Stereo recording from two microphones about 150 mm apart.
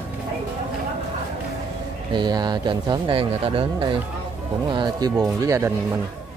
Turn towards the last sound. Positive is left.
turn(degrees=-20)  # may be behind; listen again after turning